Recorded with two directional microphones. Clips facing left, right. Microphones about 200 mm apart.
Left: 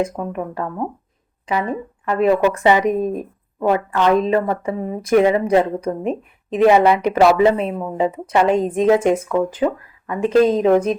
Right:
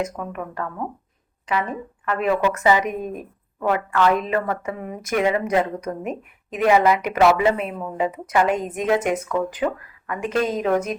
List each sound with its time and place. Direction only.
0.0 s a woman's voice: 30° left (ahead or behind)